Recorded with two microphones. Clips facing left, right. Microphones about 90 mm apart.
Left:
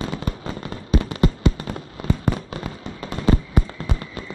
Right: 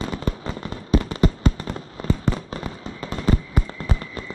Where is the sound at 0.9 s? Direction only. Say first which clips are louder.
Right 1 dB; 40° right (ahead or behind).